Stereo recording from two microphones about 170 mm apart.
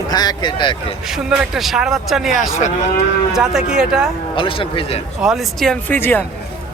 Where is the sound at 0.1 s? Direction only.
25° left (ahead or behind).